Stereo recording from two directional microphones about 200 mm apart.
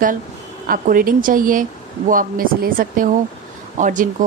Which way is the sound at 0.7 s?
45° right (ahead or behind).